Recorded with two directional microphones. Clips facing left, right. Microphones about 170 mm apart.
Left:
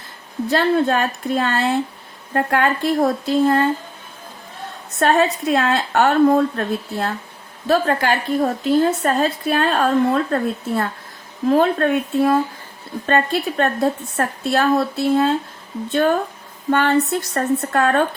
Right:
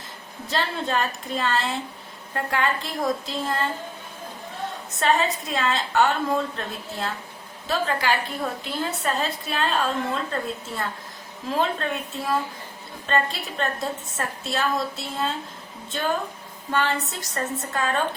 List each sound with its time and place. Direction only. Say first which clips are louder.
0.5 s a woman's voice: left 9 dB; 60° left (ahead or behind)
4.9 s a woman's voice: left 6 dB; 60° left (ahead or behind)